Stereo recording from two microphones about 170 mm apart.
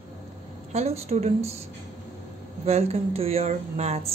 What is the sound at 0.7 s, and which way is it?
Speech, 40° right (ahead or behind).